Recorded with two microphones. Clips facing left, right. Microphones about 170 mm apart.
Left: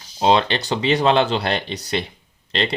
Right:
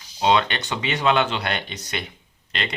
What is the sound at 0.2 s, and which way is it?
Speech, 30° left (ahead or behind).